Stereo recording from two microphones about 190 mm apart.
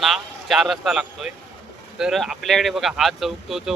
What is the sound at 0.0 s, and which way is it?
Speech, centre (ahead or behind).